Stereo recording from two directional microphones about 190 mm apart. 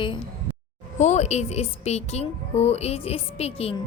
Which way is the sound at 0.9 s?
35° left (ahead or behind).